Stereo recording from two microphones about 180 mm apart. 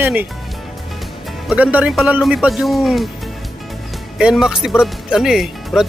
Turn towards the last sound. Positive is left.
turn(degrees=0)  # may be behind; listen again after turning